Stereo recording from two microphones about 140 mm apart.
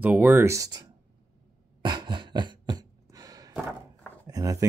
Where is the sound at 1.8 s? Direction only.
35° right (ahead or behind).